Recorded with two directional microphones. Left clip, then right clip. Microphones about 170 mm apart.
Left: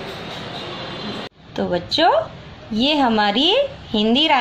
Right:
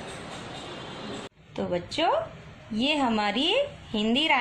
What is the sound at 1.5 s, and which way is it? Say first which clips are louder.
A woman's voice: left 9 dB; 20° left (ahead or behind).